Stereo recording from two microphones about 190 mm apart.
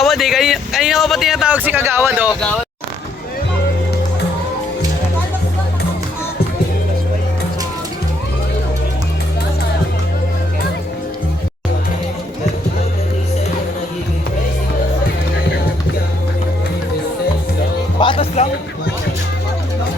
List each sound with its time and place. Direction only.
0.0 s a man's voice: centre (ahead or behind)
18.0 s music: 30° left (ahead or behind)